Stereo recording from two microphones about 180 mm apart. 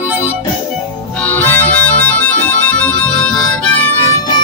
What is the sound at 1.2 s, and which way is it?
Harmonica, 10° left (ahead or behind).